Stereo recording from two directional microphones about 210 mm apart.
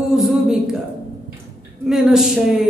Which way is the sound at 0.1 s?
Centre (ahead or behind).